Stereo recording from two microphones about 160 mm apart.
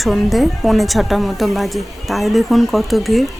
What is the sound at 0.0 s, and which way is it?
Speech, centre (ahead or behind).